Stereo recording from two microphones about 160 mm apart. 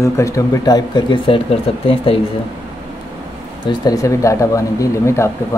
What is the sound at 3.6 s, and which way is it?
Speech, 25° left (ahead or behind).